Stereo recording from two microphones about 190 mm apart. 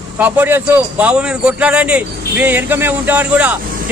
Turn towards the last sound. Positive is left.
turn(degrees=-5)  # may be behind; listen again after turning